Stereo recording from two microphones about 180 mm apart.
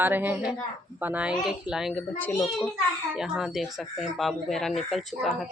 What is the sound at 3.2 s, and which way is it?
Speech, centre (ahead or behind).